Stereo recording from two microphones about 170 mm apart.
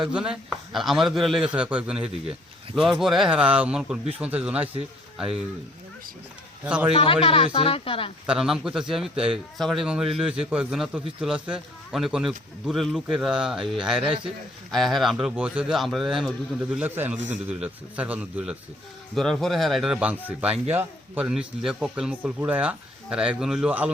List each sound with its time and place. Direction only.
0.0 s a man's voice: 5° right (ahead or behind)
6.7 s a man's voice: 5° right (ahead or behind)
6.9 s speech: 35° left (ahead or behind)
8.3 s a man's voice: 5° right (ahead or behind)
9.1 s speech: 35° right (ahead or behind)
9.6 s a man's voice: centre (ahead or behind)
19.1 s a man's voice: centre (ahead or behind)